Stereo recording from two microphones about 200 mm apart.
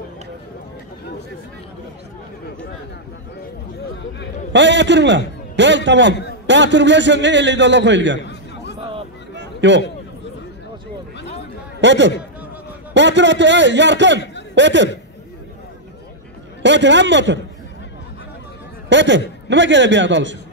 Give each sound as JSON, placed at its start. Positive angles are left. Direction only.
{"t": 4.5, "sound": "a man's voice", "side_deg": -60}
{"t": 8.2, "sound": "a sound", "side_deg": 60}
{"t": 9.4, "sound": "a sound", "side_deg": -65}
{"t": 11.8, "sound": "a man's voice", "side_deg": -65}
{"t": 16.6, "sound": "a man's voice", "side_deg": -65}
{"t": 18.9, "sound": "a man's voice", "side_deg": -65}